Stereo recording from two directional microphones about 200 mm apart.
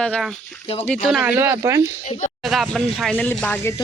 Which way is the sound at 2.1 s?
40° left (ahead or behind).